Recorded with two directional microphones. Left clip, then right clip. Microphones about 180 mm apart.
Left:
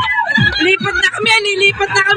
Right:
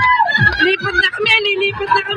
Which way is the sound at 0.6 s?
15° left (ahead or behind).